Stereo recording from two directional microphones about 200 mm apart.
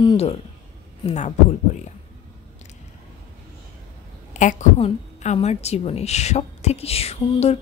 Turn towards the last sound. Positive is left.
turn(degrees=30)  # may be behind; listen again after turning